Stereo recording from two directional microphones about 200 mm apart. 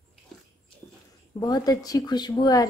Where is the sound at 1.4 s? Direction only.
20° left (ahead or behind).